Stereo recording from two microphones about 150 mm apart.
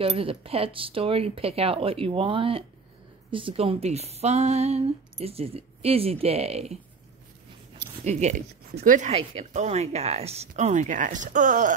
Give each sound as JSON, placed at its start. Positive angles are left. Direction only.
{"t": 0.0, "sound": "speech", "side_deg": -40}
{"t": 8.0, "sound": "speech", "side_deg": -50}